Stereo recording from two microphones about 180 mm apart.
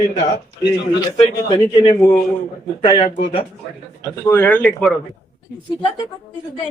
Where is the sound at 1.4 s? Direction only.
30° left (ahead or behind).